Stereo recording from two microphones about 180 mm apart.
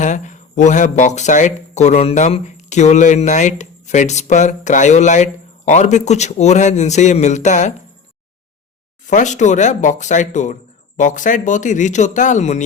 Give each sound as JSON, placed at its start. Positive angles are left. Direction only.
{"t": 0.0, "sound": "speech", "side_deg": 45}
{"t": 9.0, "sound": "speech", "side_deg": 40}